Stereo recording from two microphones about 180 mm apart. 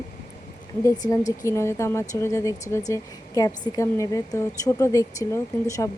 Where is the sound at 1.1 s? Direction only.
15° left (ahead or behind).